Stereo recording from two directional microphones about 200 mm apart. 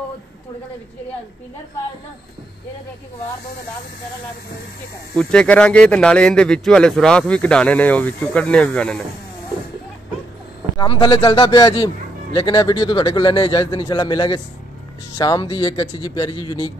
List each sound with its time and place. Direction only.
5.1 s speech: 5° left (ahead or behind)
10.8 s speech: 20° left (ahead or behind)